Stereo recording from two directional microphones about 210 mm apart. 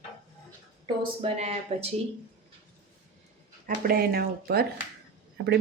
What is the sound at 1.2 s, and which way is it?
Speech, 30° right (ahead or behind).